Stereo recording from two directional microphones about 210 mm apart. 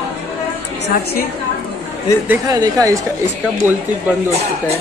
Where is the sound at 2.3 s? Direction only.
15° right (ahead or behind).